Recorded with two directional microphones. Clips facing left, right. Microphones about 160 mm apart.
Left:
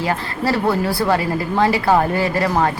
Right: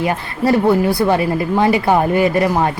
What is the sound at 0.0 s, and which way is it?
A woman's voice, 20° right (ahead or behind).